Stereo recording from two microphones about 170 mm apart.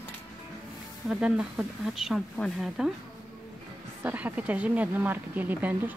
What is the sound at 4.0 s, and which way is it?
A woman's voice, 10° right (ahead or behind).